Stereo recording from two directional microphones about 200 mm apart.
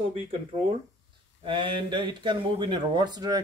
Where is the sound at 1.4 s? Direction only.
25° right (ahead or behind).